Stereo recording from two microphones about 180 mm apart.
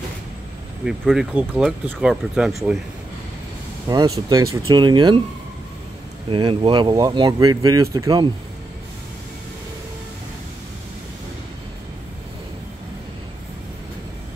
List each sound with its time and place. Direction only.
0.8 s speech: centre (ahead or behind)
3.9 s speech: 20° right (ahead or behind)
6.3 s speech: 25° right (ahead or behind)